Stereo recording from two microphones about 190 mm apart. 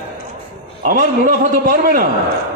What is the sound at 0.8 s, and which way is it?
A man's voice, 50° right (ahead or behind).